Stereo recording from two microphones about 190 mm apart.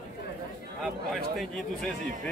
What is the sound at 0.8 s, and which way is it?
A man's voice, centre (ahead or behind).